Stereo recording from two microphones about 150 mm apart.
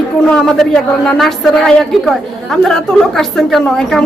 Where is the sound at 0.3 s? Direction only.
5° left (ahead or behind).